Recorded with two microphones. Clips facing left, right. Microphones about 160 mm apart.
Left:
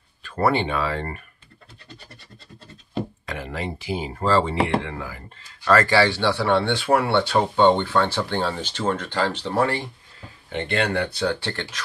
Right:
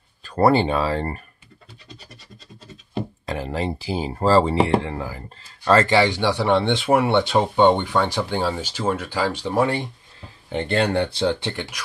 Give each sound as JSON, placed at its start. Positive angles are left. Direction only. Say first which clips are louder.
{"t": 0.2, "sound": "speech", "louder": "right 4 dB", "side_deg": -35}
{"t": 3.3, "sound": "speech", "louder": "right 5 dB", "side_deg": -30}
{"t": 10.5, "sound": "speech", "louder": "right 3 dB", "side_deg": -35}